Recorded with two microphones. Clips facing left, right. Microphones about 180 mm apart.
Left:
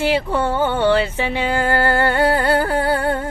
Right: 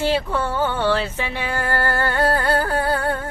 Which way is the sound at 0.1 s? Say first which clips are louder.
Left 3 dB; 15° left (ahead or behind).